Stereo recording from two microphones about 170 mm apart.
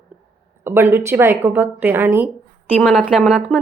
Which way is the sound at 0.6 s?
10° right (ahead or behind).